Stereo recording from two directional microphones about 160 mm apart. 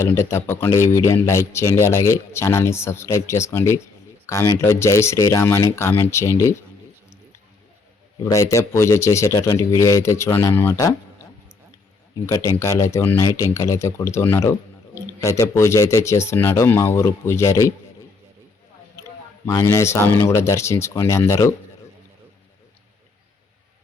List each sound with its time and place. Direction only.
0.0 s speech: 15° left (ahead or behind)
8.2 s speech: 20° left (ahead or behind)
12.2 s speech: 20° left (ahead or behind)
19.5 s speech: 20° left (ahead or behind)